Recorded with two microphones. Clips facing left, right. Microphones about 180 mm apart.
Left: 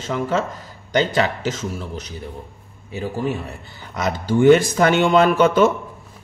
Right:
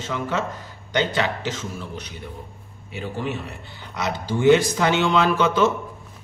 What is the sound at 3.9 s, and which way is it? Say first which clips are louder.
Speech: left 5 dB; 50° left (ahead or behind).